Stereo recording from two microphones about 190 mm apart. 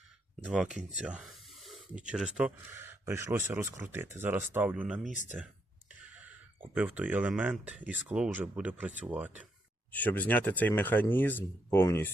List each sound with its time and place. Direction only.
0.4 s speech: 5° right (ahead or behind)
0.9 s spray: 5° right (ahead or behind)
2.0 s speech: 5° right (ahead or behind)
5.1 s speech: 40° left (ahead or behind)
5.9 s a sound: 10° right (ahead or behind)
7.8 s speech: 10° right (ahead or behind)
9.9 s speech: 10° left (ahead or behind)